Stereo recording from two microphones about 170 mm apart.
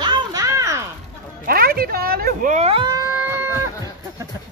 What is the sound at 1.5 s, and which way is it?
A woman's voice, 60° right (ahead or behind).